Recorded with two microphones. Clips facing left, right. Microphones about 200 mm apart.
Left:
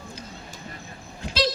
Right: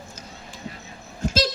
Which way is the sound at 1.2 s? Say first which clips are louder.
Right 2 dB; 45° right (ahead or behind).